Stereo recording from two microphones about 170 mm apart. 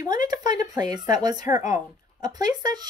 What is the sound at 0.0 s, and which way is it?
Speech, 25° right (ahead or behind).